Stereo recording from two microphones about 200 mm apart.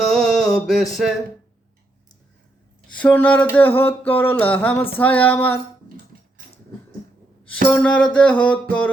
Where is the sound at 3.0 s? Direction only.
10° left (ahead or behind).